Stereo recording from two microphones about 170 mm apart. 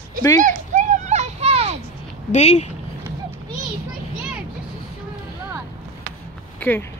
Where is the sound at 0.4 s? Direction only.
50° right (ahead or behind).